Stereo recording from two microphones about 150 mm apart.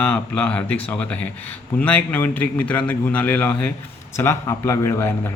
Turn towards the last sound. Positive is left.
turn(degrees=15)  # may be behind; listen again after turning